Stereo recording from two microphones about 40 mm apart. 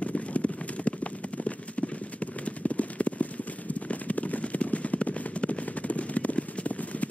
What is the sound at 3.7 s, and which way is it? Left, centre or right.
Clip-clop, left.